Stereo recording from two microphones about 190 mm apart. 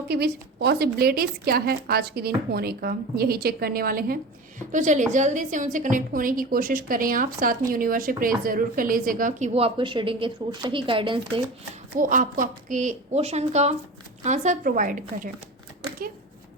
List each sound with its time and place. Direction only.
0.1 s a woman's voice: 60° right (ahead or behind)
4.7 s a woman's voice: 40° right (ahead or behind)
11.9 s a woman's voice: 45° right (ahead or behind)